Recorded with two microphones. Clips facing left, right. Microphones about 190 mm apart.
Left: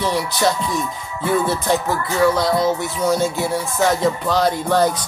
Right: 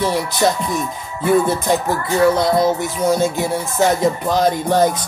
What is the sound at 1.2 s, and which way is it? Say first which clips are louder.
Music: right 4 dB; 20° right (ahead or behind).